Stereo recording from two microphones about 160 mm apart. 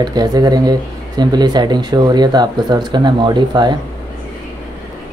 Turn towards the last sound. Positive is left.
turn(degrees=-25)  # may be behind; listen again after turning